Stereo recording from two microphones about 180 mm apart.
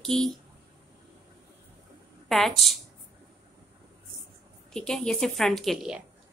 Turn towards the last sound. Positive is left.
turn(degrees=0)  # may be behind; listen again after turning